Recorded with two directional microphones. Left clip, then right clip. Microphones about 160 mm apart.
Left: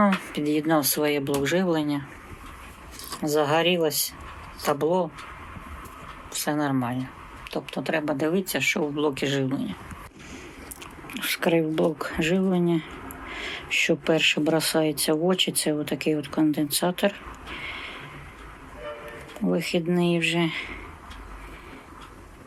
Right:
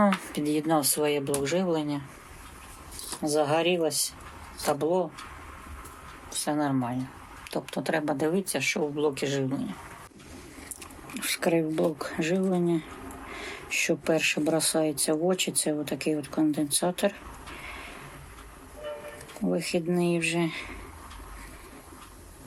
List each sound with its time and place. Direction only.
0.0 s speech: 15° right (ahead or behind)
0.7 s speech: centre (ahead or behind)
3.2 s speech: centre (ahead or behind)
6.4 s speech: centre (ahead or behind)
7.5 s speech: 30° right (ahead or behind); by 9.7 s centre (ahead or behind)
11.1 s speech: 5° right (ahead or behind)
19.5 s speech: centre (ahead or behind)